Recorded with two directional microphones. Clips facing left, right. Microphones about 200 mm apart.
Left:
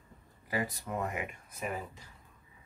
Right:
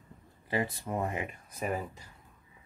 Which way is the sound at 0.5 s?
25° right (ahead or behind).